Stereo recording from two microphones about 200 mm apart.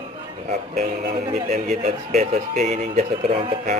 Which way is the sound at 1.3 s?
30° right (ahead or behind).